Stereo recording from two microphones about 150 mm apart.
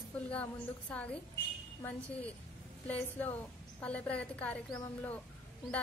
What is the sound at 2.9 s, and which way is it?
A woman's voice, 10° left (ahead or behind).